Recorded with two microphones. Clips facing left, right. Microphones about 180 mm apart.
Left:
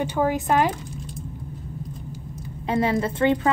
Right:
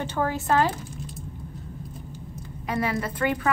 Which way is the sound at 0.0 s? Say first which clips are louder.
Left 4 dB; 15° left (ahead or behind).